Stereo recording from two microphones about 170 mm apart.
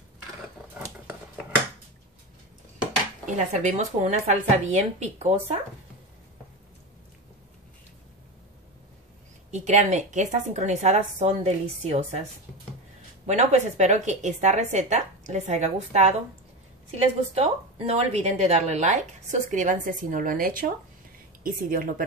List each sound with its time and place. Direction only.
0.8 s a sound: 5° right (ahead or behind)
3.3 s a woman's voice: 45° right (ahead or behind)
9.5 s a woman's voice: 45° right (ahead or behind)
13.3 s a woman's voice: 40° right (ahead or behind)
17.3 s a woman's voice: 35° right (ahead or behind); by 22.0 s 55° right (ahead or behind)